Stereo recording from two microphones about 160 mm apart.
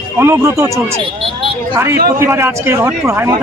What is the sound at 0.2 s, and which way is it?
Speech, 20° right (ahead or behind).